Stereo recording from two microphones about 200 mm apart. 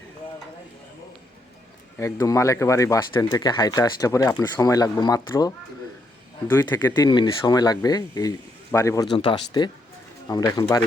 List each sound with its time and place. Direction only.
2.0 s speech: 15° left (ahead or behind)